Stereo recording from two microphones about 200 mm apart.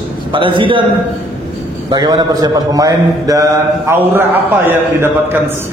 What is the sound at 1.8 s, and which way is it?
A man's voice, 20° right (ahead or behind).